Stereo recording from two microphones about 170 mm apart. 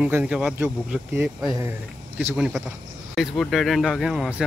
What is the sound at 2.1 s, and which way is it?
Speech, 5° right (ahead or behind).